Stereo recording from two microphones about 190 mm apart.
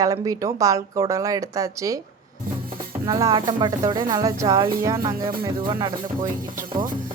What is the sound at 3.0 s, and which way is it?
Speech, 20° right (ahead or behind).